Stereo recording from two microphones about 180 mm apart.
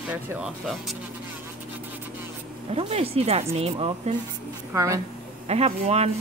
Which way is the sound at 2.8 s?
35° right (ahead or behind).